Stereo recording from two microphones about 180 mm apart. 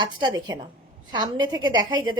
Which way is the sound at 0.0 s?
25° right (ahead or behind).